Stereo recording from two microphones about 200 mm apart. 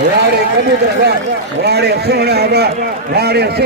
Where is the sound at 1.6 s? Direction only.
55° right (ahead or behind).